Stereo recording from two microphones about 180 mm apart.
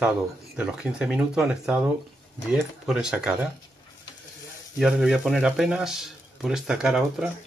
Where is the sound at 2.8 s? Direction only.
5° right (ahead or behind).